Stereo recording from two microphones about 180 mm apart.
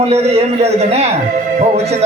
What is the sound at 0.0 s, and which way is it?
A man's voice, 35° right (ahead or behind).